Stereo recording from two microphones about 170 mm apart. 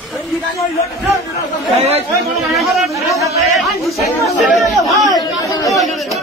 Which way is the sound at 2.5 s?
Centre (ahead or behind).